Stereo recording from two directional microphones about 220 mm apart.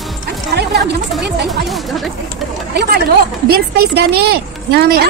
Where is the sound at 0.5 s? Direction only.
45° right (ahead or behind).